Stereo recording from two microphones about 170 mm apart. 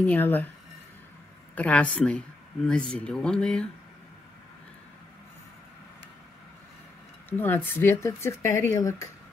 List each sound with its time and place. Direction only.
0.0 s speech: 10° left (ahead or behind)
1.5 s speech: 10° left (ahead or behind)
7.2 s speech: 10° left (ahead or behind)